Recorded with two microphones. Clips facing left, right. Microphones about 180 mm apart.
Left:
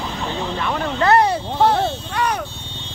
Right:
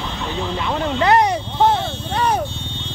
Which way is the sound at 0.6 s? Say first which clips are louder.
Right 2 dB; 20° right (ahead or behind).